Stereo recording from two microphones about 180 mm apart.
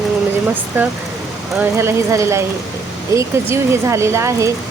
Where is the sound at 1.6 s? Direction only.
15° right (ahead or behind).